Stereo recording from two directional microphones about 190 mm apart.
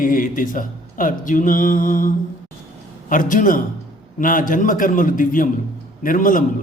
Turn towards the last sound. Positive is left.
turn(degrees=45)  # may be behind; listen again after turning